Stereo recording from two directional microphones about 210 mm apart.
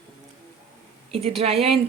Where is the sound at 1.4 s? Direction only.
30° right (ahead or behind).